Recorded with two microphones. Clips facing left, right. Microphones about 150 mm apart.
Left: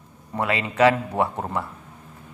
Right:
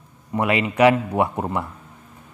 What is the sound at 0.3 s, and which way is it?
A man's voice, 15° right (ahead or behind).